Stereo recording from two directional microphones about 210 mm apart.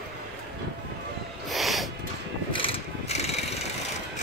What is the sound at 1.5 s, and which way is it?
Snort, centre (ahead or behind).